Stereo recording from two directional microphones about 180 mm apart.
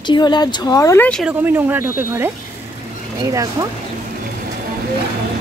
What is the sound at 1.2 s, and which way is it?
Speech, 10° right (ahead or behind).